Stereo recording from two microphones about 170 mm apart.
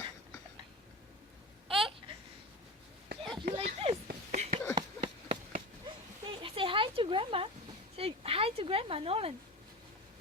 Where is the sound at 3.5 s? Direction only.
35° right (ahead or behind).